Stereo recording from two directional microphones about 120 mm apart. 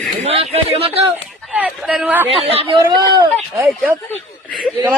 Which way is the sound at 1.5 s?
10° right (ahead or behind).